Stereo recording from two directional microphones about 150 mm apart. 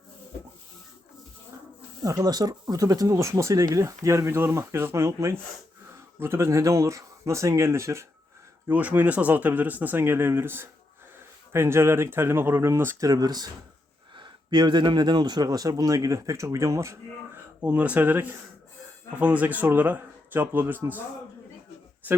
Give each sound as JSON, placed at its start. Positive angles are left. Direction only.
{"t": 2.0, "sound": "speech", "side_deg": -25}